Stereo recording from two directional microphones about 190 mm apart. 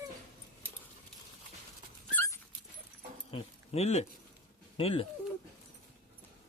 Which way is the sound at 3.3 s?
35° left (ahead or behind).